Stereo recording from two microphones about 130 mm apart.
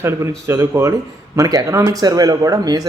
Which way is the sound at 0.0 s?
20° right (ahead or behind).